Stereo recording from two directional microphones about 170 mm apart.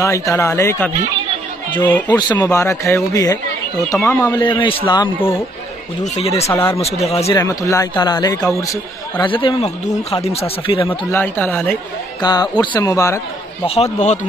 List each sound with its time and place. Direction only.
0.0 s speech: 20° left (ahead or behind)
2.0 s speech: 25° left (ahead or behind)
4.4 s speech: 30° left (ahead or behind)
6.5 s speech: 15° left (ahead or behind)
6.8 s speech: 40° left (ahead or behind)
7.3 s speech: 20° left (ahead or behind)
10.9 s speech: 10° left (ahead or behind)
12.2 s speech: 25° left (ahead or behind)
13.7 s speech: 40° left (ahead or behind)